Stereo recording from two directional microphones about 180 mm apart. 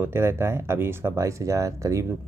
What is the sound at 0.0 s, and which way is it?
Speech, 15° right (ahead or behind).